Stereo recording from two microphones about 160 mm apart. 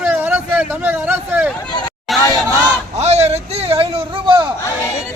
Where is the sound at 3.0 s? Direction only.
45° right (ahead or behind).